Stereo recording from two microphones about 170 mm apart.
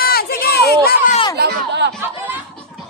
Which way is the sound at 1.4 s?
80° right.